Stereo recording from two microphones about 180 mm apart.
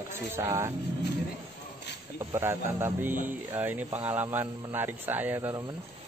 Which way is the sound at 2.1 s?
15° right (ahead or behind).